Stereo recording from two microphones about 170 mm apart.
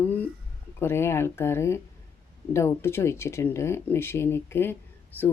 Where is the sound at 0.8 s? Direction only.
15° left (ahead or behind).